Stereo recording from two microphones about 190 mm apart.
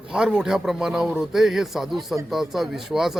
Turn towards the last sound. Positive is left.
turn(degrees=0)  # may be behind; listen again after turning